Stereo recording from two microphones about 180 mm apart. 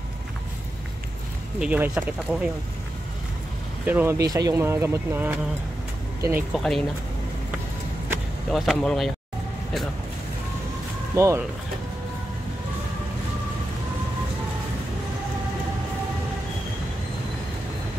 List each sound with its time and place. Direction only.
1.6 s speech: 10° right (ahead or behind)
3.8 s speech: 10° right (ahead or behind)
6.5 s speech: centre (ahead or behind)
8.5 s speech: centre (ahead or behind)
11.1 s speech: 15° right (ahead or behind)